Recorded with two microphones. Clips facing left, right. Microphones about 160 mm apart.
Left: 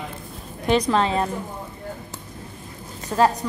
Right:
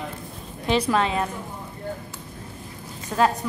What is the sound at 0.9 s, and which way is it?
Speech, 30° left (ahead or behind).